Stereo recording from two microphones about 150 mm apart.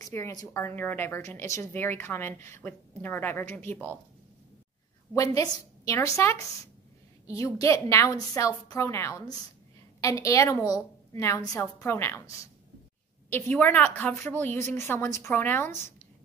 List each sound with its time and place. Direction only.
0.0 s speech: 20° left (ahead or behind)
5.1 s a woman's voice: 25° left (ahead or behind)